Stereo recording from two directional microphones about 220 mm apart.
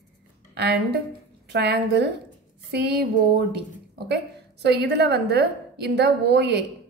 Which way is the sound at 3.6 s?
50° right (ahead or behind).